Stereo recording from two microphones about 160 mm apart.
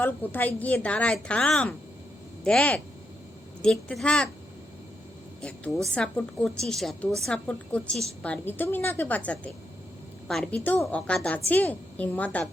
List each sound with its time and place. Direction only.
0.0 s a woman's voice: 10° left (ahead or behind)
5.4 s a woman's voice: 5° left (ahead or behind)